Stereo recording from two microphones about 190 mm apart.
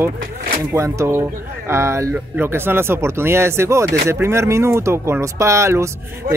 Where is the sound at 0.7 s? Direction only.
15° right (ahead or behind).